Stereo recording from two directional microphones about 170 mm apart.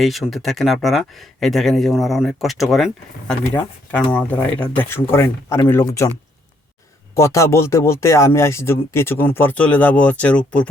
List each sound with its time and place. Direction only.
0.0 s speech: centre (ahead or behind); by 6.1 s 15° left (ahead or behind)
7.2 s speech: 15° left (ahead or behind)